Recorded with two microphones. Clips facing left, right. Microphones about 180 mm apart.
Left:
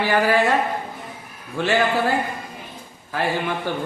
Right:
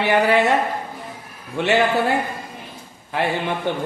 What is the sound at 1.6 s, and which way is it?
Speech, 20° right (ahead or behind).